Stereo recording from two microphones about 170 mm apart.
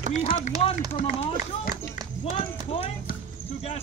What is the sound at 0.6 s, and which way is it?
Speech, 35° left (ahead or behind).